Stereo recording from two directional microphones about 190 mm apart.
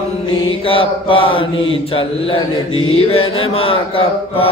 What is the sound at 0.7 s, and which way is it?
Mantra, 30° left (ahead or behind).